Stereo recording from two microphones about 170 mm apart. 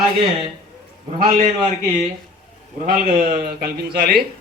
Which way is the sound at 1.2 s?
35° right (ahead or behind).